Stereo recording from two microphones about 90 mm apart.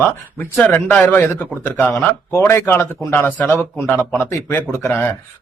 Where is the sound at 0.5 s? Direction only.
20° left (ahead or behind).